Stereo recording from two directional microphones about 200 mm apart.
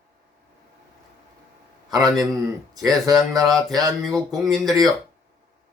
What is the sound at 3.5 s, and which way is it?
Mantra, centre (ahead or behind).